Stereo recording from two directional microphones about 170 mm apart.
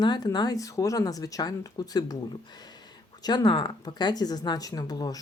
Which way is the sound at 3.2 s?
25° left (ahead or behind).